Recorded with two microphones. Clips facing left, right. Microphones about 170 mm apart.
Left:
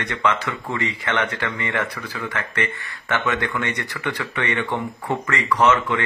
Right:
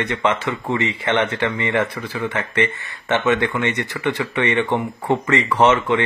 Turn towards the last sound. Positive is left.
turn(degrees=-25)  # may be behind; listen again after turning